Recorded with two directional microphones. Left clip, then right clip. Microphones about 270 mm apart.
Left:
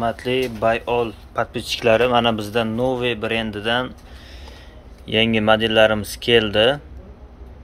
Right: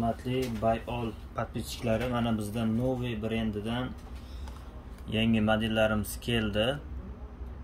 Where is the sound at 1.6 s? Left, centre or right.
Left.